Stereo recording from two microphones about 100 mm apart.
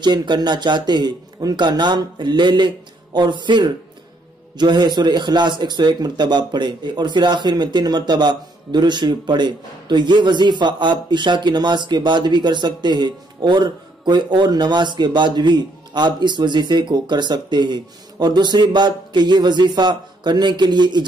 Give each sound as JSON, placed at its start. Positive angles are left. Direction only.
{"t": 0.0, "sound": "a man's voice", "side_deg": -50}